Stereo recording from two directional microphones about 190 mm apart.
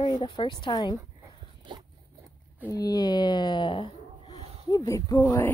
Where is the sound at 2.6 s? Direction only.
20° left (ahead or behind).